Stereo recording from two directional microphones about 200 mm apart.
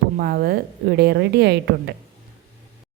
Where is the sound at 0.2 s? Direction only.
50° right (ahead or behind).